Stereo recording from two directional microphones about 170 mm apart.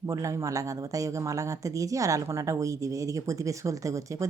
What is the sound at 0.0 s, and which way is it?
A woman's voice, 20° right (ahead or behind).